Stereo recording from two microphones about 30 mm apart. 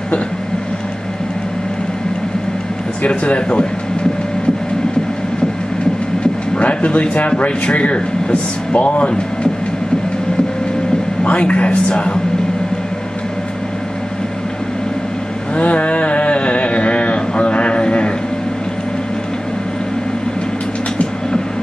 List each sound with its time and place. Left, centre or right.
3.1 s speech: left
6.6 s speech: left
11.2 s speech: left
15.5 s a sound: left